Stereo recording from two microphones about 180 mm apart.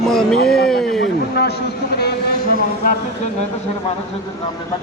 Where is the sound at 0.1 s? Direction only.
Centre (ahead or behind).